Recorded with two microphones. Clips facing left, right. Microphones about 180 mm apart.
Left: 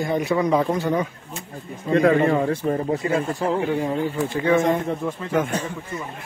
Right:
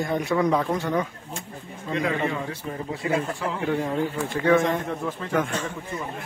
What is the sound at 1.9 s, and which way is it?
A man's voice, 50° left (ahead or behind).